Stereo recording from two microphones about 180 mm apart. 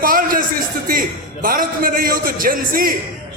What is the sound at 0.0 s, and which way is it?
A man's voice, 50° right (ahead or behind).